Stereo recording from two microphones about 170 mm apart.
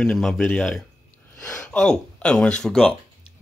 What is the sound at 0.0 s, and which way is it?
Speech, centre (ahead or behind).